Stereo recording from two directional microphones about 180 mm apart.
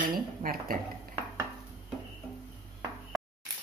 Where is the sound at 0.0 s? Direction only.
50° right (ahead or behind).